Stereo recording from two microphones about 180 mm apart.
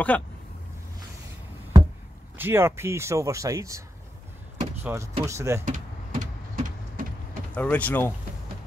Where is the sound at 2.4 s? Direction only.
15° right (ahead or behind).